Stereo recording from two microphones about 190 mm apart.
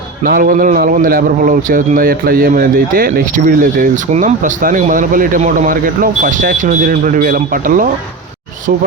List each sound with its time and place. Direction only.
0.3 s a man's voice: 45° right (ahead or behind)